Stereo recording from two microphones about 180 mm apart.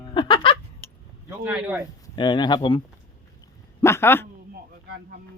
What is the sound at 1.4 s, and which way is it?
Speech, 5° right (ahead or behind).